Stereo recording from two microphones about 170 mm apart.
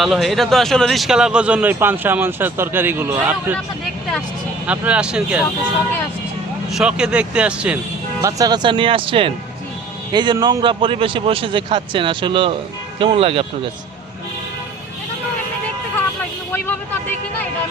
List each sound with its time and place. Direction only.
0.0 s speech: centre (ahead or behind)
4.6 s speech: 5° right (ahead or behind)
6.7 s speech: 5° right (ahead or behind)
8.2 s a man's voice: 20° right (ahead or behind)
16.5 s a sound: 10° left (ahead or behind)